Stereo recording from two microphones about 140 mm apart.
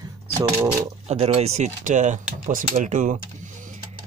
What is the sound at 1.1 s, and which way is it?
Speech, 45° right (ahead or behind).